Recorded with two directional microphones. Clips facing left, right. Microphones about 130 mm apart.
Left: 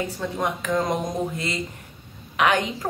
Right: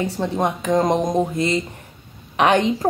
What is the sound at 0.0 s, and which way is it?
Speech, 30° right (ahead or behind).